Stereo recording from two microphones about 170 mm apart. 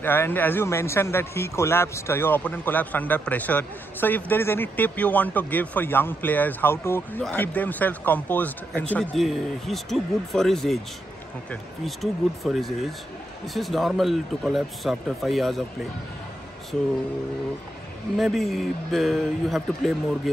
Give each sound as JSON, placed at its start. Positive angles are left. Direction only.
{"t": 0.0, "sound": "a man's voice", "side_deg": 10}
{"t": 11.8, "sound": "speech", "side_deg": 0}
{"t": 18.1, "sound": "speech", "side_deg": 0}